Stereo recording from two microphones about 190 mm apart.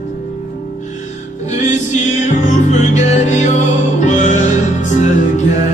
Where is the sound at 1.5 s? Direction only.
40° left (ahead or behind).